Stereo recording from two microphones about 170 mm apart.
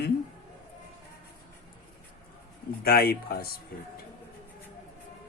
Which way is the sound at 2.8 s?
65° left (ahead or behind).